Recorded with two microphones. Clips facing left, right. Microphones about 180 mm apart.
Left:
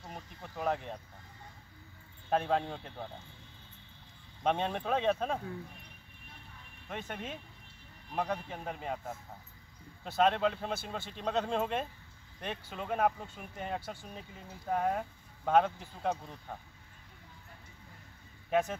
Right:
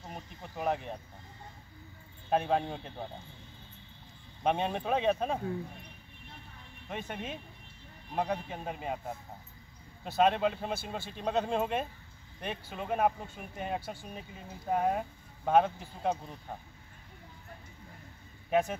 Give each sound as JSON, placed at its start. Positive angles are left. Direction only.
{"t": 0.1, "sound": "a sound", "side_deg": -15}
{"t": 2.2, "sound": "speech", "side_deg": -15}
{"t": 4.4, "sound": "speech", "side_deg": -10}
{"t": 6.9, "sound": "speech", "side_deg": -10}
{"t": 18.5, "sound": "speech", "side_deg": -10}